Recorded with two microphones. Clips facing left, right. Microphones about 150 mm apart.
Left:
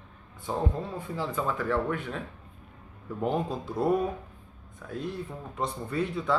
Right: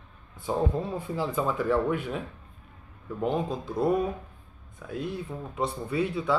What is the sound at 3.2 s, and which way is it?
Speech, centre (ahead or behind).